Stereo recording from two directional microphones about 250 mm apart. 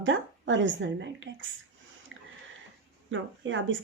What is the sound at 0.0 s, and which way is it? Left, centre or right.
Speech, right.